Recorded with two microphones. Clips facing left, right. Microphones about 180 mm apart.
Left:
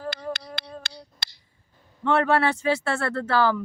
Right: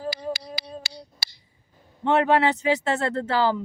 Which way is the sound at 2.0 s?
20° right (ahead or behind).